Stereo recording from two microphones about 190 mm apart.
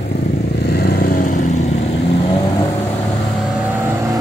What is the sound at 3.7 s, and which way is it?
Vehicle, 10° right (ahead or behind).